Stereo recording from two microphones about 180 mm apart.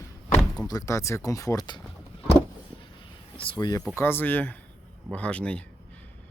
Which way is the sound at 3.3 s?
25° left (ahead or behind).